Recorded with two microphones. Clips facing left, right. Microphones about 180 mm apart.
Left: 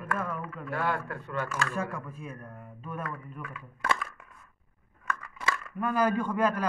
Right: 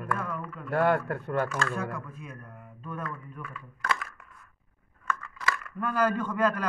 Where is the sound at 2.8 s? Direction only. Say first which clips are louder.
Even; 10° left (ahead or behind).